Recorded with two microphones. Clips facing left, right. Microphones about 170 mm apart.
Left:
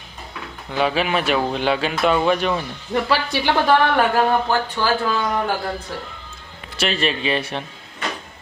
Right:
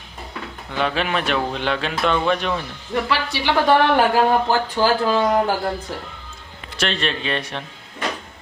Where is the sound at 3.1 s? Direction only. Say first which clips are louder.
Left 3 dB; 45° left (ahead or behind).